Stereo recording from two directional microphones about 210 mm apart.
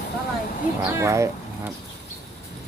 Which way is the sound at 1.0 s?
15° right (ahead or behind).